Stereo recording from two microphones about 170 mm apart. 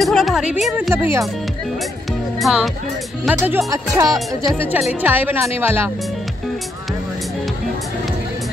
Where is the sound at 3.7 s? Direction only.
20° right (ahead or behind).